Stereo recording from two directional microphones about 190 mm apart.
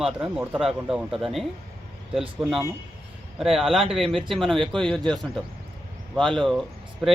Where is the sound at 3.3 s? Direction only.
Centre (ahead or behind).